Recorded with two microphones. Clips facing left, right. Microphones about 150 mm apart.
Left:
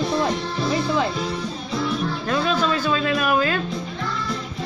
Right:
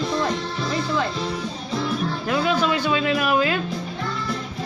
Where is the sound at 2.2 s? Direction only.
10° right (ahead or behind).